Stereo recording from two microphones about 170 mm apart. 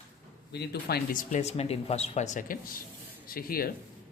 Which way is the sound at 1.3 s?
40° left (ahead or behind).